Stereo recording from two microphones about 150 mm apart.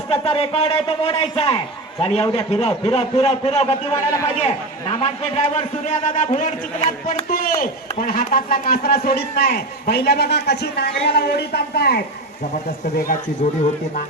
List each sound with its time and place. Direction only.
0.1 s a man's voice: 40° left (ahead or behind)
7.3 s speech: 75° left (ahead or behind); by 12.0 s 90° left
13.4 s a man's voice: 50° left (ahead or behind)